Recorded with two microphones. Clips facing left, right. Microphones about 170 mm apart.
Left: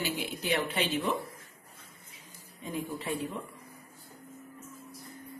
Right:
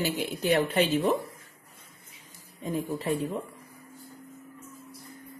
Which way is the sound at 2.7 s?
40° right (ahead or behind).